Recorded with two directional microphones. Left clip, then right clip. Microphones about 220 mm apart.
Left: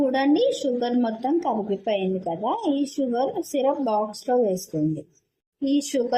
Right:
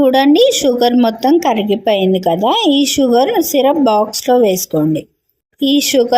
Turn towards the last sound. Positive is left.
turn(degrees=-45)  # may be behind; listen again after turning